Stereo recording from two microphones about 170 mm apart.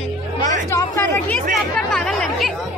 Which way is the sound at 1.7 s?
5° left (ahead or behind).